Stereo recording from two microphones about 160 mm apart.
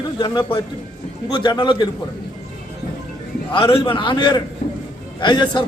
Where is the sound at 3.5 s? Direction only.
30° left (ahead or behind).